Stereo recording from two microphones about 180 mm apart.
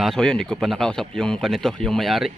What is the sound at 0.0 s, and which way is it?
Speech, centre (ahead or behind).